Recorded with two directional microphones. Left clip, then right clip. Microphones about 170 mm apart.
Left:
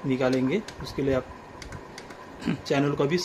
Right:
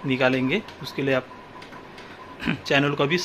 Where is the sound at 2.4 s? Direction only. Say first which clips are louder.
Right 4 dB; 5° left (ahead or behind).